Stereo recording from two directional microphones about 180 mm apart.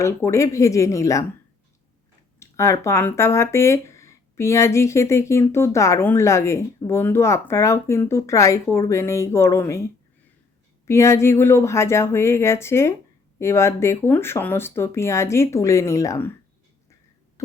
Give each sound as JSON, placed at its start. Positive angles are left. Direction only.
{"t": 0.0, "sound": "speech", "side_deg": 15}
{"t": 2.4, "sound": "speech", "side_deg": 15}